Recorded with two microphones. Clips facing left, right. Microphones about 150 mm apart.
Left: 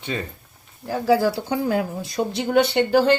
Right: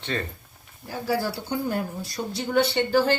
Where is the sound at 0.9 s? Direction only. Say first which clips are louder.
Left 8 dB; 90° left.